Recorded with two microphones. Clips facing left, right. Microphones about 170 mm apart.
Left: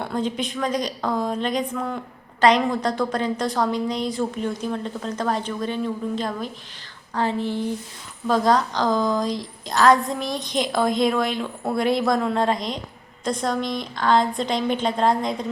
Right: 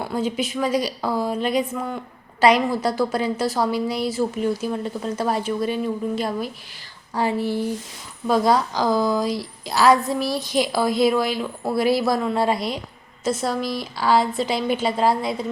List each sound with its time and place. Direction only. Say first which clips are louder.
0.0 s a woman's voice: right 1 dB; 5° right (ahead or behind)